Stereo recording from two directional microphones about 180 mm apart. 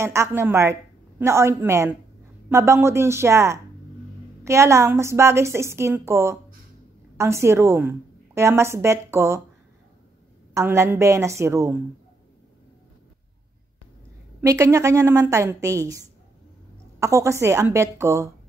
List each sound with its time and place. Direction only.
0.0 s a woman's voice: 15° right (ahead or behind)
10.5 s a woman's voice: 15° right (ahead or behind)
14.4 s a woman's voice: 15° right (ahead or behind)